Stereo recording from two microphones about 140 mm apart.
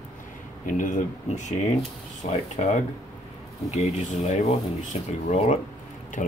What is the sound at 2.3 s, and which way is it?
Speech, 55° left (ahead or behind).